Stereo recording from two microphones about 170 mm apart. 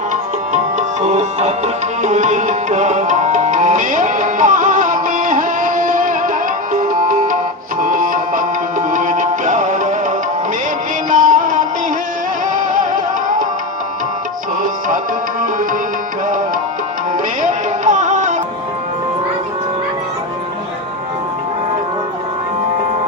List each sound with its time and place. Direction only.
0.1 s tabla: 45° right (ahead or behind)
6.7 s music: 50° right (ahead or behind)
17.4 s music: 45° right (ahead or behind)